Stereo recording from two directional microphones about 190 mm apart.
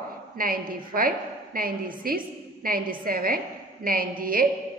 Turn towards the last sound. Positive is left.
turn(degrees=-50)  # may be behind; listen again after turning